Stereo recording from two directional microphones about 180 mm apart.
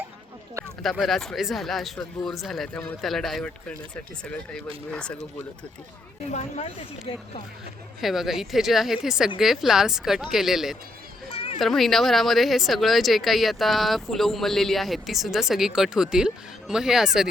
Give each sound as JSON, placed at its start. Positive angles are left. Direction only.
{"t": 0.8, "sound": "speech", "side_deg": 0}
{"t": 6.3, "sound": "speech", "side_deg": 35}
{"t": 8.0, "sound": "speech", "side_deg": 0}
{"t": 11.3, "sound": "cat", "side_deg": 30}
{"t": 11.6, "sound": "speech", "side_deg": 0}